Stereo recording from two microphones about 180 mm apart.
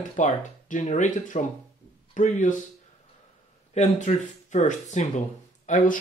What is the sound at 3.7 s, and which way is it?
Speech, 40° left (ahead or behind).